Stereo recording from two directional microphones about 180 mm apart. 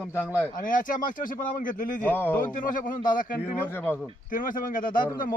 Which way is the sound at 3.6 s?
10° left (ahead or behind).